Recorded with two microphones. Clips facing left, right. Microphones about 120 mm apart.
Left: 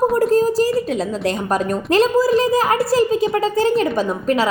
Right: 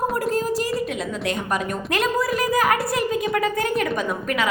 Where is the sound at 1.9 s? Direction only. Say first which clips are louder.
Left 8 dB; 30° left (ahead or behind).